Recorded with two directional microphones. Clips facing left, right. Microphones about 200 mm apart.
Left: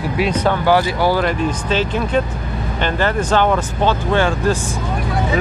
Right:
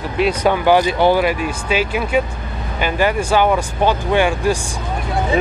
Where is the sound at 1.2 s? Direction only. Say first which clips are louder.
Even; 10° right (ahead or behind).